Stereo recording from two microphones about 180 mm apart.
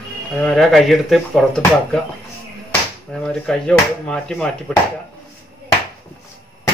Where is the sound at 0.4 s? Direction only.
Centre (ahead or behind).